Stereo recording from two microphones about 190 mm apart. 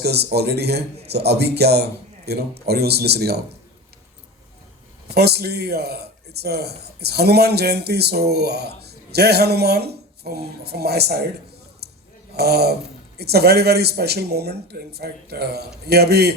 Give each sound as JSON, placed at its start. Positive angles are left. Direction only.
{"t": 0.0, "sound": "speech", "side_deg": -60}
{"t": 5.1, "sound": "speech", "side_deg": -60}
{"t": 11.8, "sound": "a sound", "side_deg": -60}
{"t": 12.3, "sound": "speech", "side_deg": -60}